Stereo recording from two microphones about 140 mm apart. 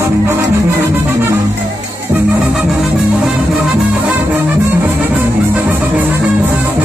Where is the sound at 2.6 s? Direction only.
5° right (ahead or behind).